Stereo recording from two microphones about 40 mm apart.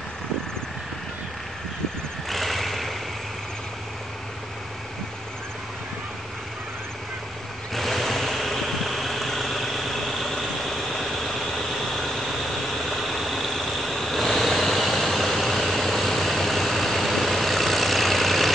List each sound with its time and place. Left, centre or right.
2.2 s vehicle: centre
7.7 s vehicle: centre